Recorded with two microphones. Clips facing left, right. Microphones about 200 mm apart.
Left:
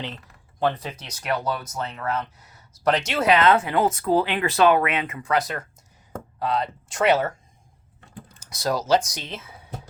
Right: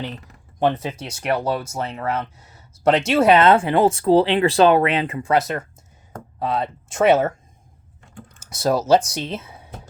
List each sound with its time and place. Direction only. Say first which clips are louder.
0.6 s speech: right 4 dB; 25° right (ahead or behind)
8.4 s typing: right 5 dB; 25° right (ahead or behind)
9.0 s speech: right 8 dB; 30° right (ahead or behind)